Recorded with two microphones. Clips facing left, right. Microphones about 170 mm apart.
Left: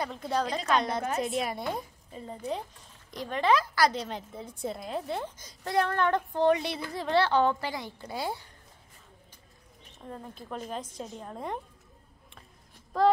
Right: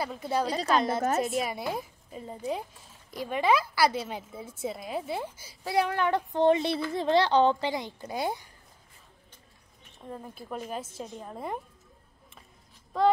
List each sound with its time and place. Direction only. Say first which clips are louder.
0.0 s a woman's voice: right 1 dB; 5° right (ahead or behind)
6.3 s a child's voice: right 5 dB; 25° right (ahead or behind)
10.0 s a woman's voice: right 1 dB; 10° right (ahead or behind)
12.9 s a woman's voice: even; centre (ahead or behind)